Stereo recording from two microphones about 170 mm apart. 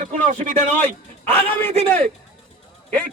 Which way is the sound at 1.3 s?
10° left (ahead or behind).